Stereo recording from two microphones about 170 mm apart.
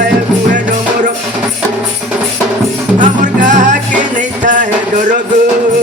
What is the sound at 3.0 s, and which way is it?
Music, 45° right (ahead or behind).